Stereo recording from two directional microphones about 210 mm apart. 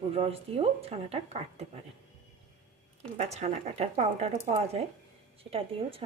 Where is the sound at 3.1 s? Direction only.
30° right (ahead or behind).